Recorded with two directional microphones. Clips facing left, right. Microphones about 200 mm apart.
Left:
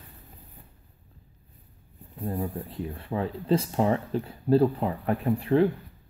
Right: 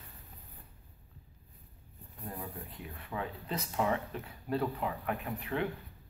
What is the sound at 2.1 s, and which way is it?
Speech, 30° left (ahead or behind).